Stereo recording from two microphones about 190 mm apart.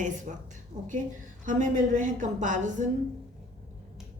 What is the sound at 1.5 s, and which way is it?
A woman's voice, 40° right (ahead or behind).